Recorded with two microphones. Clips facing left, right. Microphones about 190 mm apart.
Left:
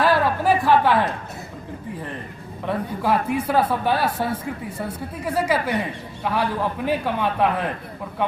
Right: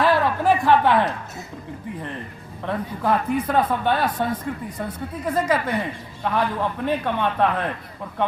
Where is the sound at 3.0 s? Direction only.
10° left (ahead or behind).